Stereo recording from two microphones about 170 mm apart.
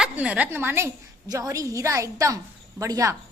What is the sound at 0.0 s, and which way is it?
A woman's voice, 5° right (ahead or behind).